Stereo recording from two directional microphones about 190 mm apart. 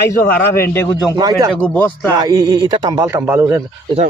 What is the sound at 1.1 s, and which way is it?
Speech, 20° right (ahead or behind).